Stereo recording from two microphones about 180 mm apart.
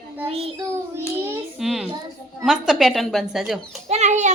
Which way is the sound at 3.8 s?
40° right (ahead or behind).